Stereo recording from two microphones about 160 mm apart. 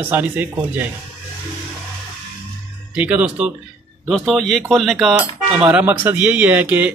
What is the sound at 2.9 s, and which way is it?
Speech, 10° right (ahead or behind).